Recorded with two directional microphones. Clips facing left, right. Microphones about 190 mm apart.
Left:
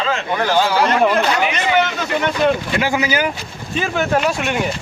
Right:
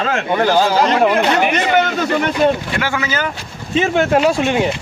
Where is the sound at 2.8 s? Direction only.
20° left (ahead or behind).